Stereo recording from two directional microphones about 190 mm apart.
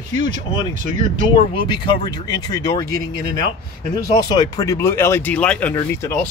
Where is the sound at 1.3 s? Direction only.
25° left (ahead or behind); by 5.7 s 5° left (ahead or behind).